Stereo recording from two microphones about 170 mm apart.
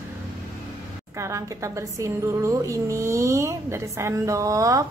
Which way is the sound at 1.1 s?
15° right (ahead or behind).